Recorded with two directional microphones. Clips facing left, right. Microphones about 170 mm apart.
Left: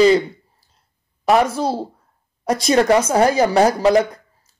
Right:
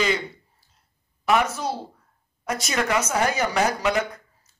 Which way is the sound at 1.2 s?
35° left (ahead or behind).